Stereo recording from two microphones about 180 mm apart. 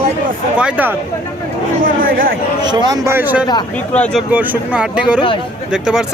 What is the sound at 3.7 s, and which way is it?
Speech, 5° left (ahead or behind).